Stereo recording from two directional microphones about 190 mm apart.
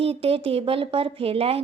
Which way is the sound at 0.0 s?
30° right (ahead or behind).